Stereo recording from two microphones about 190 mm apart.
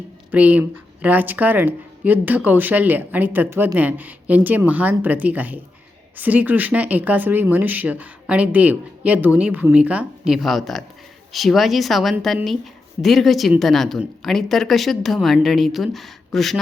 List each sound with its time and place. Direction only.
0.3 s a woman's voice: 10° right (ahead or behind)